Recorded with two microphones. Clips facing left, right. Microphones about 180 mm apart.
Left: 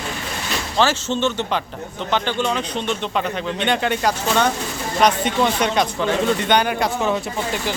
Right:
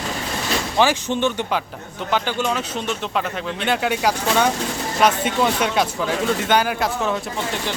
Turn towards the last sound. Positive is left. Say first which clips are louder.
# left 2 dB
turn(degrees=0)  # may be behind; listen again after turning